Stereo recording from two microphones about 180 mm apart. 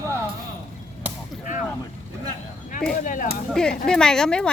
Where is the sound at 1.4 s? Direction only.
45° left (ahead or behind).